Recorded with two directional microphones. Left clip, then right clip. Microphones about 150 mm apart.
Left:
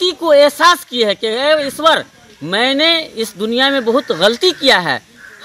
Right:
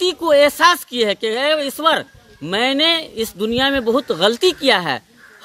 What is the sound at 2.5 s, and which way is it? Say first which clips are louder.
Speech: left 3 dB; 45° right (ahead or behind).